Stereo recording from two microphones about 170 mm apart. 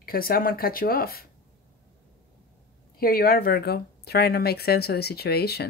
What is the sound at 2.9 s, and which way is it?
Speech, 60° left (ahead or behind).